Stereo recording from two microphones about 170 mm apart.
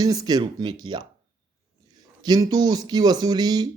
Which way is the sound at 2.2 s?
25° right (ahead or behind).